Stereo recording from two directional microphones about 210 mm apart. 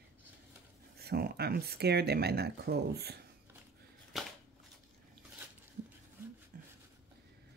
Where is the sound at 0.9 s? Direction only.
50° right (ahead or behind).